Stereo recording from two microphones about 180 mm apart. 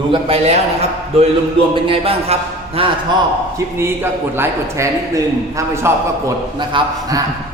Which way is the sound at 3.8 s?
15° right (ahead or behind).